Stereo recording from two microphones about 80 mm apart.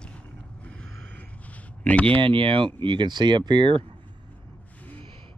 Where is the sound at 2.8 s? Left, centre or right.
Right.